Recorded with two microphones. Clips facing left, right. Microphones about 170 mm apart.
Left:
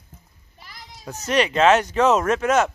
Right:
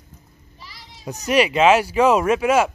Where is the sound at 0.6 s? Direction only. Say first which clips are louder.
Left 1 dB; 50° left (ahead or behind).